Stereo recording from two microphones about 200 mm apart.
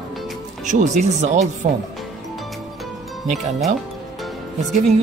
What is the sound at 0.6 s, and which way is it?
Speech, 35° right (ahead or behind).